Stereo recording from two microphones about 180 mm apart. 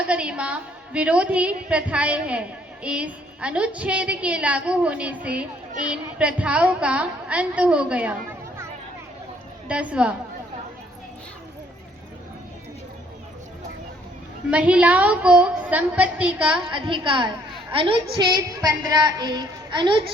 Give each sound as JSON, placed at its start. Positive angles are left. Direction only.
{"t": 0.0, "sound": "a woman's voice", "side_deg": -5}
{"t": 9.6, "sound": "a woman's voice", "side_deg": -5}
{"t": 14.5, "sound": "a woman's voice", "side_deg": -5}
{"t": 16.6, "sound": "a woman's voice", "side_deg": -25}